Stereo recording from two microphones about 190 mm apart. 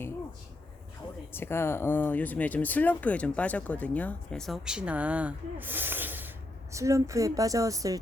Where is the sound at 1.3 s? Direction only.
10° left (ahead or behind).